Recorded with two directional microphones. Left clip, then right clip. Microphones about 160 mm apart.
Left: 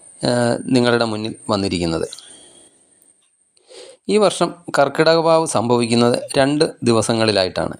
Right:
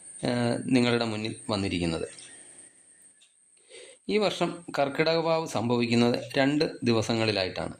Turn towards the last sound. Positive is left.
turn(degrees=45)  # may be behind; listen again after turning